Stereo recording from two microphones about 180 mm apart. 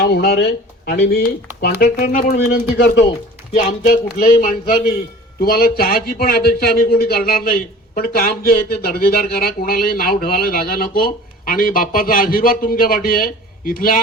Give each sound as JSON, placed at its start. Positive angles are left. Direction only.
{"t": 0.0, "sound": "speech", "side_deg": 60}